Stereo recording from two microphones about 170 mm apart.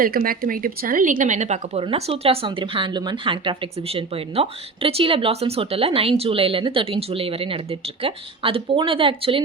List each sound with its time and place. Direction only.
0.0 s speech: 55° right (ahead or behind); by 9.4 s 30° right (ahead or behind)